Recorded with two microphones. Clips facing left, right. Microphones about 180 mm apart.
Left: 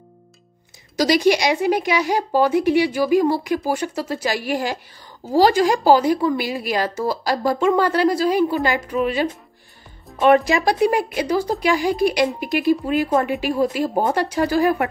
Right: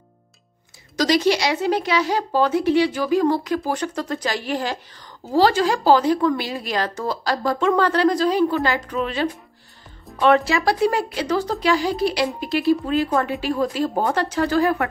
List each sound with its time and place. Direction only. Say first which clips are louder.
0.9 s speech: left 2 dB; 10° left (ahead or behind)